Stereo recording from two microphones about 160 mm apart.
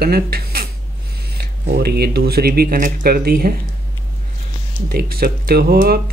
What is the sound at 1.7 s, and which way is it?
Speech, 90° right.